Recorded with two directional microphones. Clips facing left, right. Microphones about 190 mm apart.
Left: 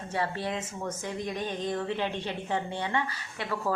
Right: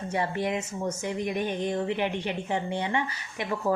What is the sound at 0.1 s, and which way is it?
Speech, 15° right (ahead or behind).